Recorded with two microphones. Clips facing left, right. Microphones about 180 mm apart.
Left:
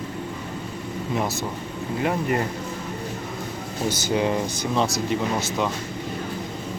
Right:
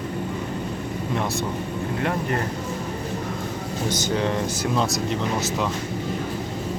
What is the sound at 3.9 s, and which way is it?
Speech, 10° left (ahead or behind).